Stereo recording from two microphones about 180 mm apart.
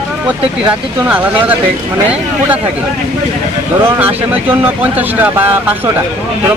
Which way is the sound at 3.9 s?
10° right (ahead or behind).